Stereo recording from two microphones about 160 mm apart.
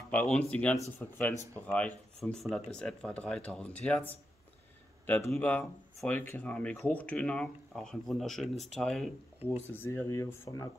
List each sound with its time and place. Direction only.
0.1 s speech: 10° left (ahead or behind)
5.0 s speech: 15° left (ahead or behind)
9.4 s speech: 10° right (ahead or behind)
9.8 s speech: 15° left (ahead or behind)